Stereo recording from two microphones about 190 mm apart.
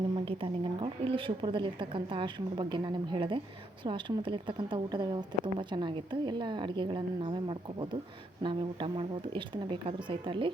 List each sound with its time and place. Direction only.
0.3 s a woman's voice: 25° right (ahead or behind)